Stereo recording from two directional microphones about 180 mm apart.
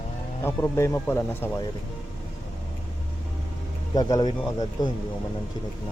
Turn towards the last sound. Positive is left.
turn(degrees=20)  # may be behind; listen again after turning